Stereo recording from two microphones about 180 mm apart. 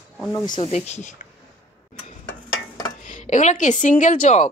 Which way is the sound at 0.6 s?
35° left (ahead or behind).